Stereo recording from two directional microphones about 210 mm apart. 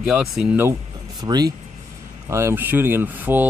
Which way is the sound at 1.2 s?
20° right (ahead or behind).